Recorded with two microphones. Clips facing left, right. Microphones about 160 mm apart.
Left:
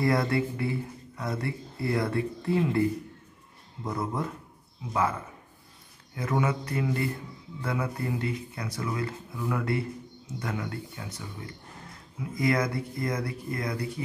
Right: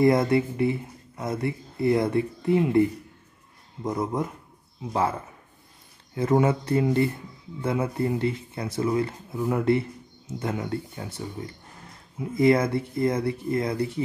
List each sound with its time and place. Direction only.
0.0 s speech: 20° right (ahead or behind)
6.1 s speech: 30° right (ahead or behind)